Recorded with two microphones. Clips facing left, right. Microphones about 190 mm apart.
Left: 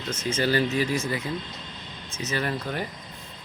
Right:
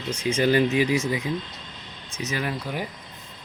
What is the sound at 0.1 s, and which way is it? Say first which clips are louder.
Speech: right 4 dB; 15° right (ahead or behind).